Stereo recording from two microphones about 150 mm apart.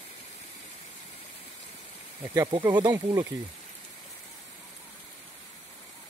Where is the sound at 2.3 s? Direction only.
30° right (ahead or behind).